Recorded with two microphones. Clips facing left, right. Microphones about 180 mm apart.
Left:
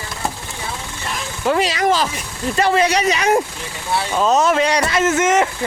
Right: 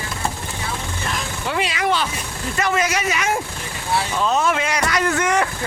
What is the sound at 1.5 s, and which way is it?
Speech, 40° left (ahead or behind).